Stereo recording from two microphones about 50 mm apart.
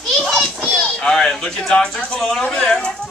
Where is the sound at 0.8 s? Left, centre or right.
Centre.